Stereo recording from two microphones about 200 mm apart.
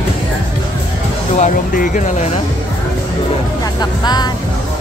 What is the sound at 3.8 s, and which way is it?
Speech, 20° left (ahead or behind).